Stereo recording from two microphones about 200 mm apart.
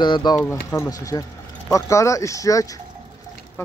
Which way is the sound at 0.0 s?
20° left (ahead or behind).